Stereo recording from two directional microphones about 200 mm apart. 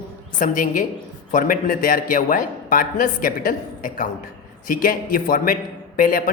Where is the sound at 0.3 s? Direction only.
40° left (ahead or behind).